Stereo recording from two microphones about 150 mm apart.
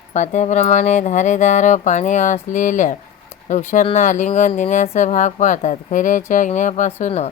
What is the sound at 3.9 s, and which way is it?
Speech, 55° left (ahead or behind).